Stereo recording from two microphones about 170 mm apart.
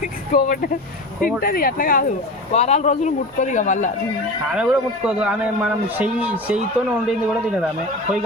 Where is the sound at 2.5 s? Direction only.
40° left (ahead or behind).